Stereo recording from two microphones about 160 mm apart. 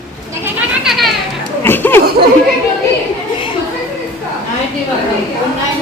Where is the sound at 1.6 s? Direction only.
15° left (ahead or behind).